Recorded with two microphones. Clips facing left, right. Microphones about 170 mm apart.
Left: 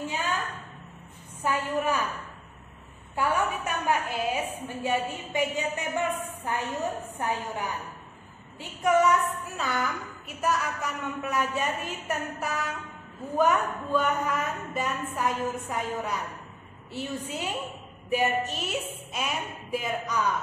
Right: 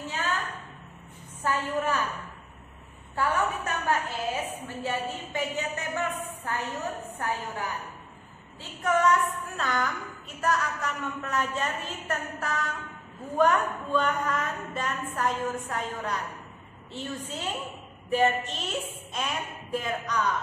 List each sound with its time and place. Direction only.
0.1 s a sound: 10° left (ahead or behind)
1.4 s a woman's voice: 15° left (ahead or behind)
3.2 s a woman's voice: 15° left (ahead or behind)